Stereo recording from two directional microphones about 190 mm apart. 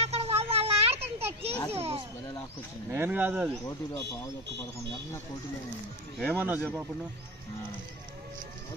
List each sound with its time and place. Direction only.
0.0 s children playing: 30° right (ahead or behind)
2.9 s speech: 10° right (ahead or behind)
6.3 s speech: 10° right (ahead or behind)